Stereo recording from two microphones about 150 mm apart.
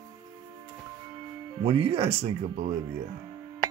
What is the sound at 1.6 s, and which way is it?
Speech, 40° right (ahead or behind).